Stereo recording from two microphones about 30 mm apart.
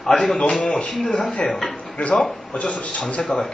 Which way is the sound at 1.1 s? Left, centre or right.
Left.